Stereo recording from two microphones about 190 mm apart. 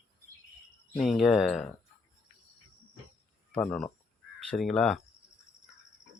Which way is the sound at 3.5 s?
5° left (ahead or behind).